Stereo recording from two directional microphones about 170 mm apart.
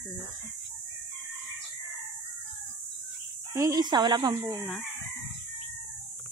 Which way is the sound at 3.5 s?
20° right (ahead or behind).